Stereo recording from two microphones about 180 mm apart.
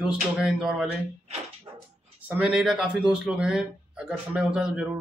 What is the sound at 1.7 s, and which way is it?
Dog, 20° right (ahead or behind).